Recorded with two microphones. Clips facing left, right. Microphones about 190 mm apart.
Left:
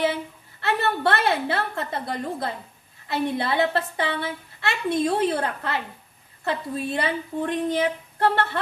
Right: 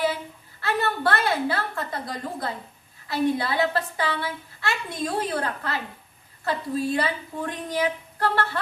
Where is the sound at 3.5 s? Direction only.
25° left (ahead or behind).